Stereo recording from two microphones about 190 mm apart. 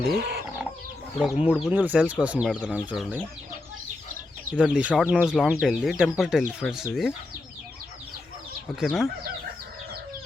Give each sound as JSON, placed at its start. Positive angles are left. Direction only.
{"t": 0.2, "sound": "chicken", "side_deg": -55}
{"t": 1.2, "sound": "speech", "side_deg": -5}
{"t": 4.5, "sound": "speech", "side_deg": -5}
{"t": 8.8, "sound": "speech", "side_deg": 0}